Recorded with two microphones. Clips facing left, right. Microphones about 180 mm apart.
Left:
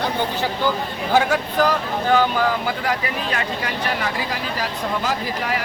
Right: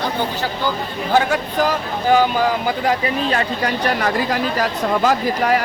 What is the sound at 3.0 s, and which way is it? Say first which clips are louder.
Speech: right 5 dB; 35° right (ahead or behind).